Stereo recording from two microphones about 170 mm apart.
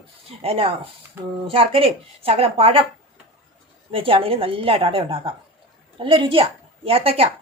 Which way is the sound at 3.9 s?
30° right (ahead or behind).